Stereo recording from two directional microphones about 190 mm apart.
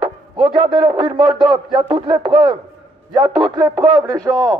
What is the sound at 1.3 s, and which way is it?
Speech, 25° right (ahead or behind).